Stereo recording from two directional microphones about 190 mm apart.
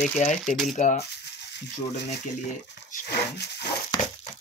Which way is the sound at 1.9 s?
65° left (ahead or behind).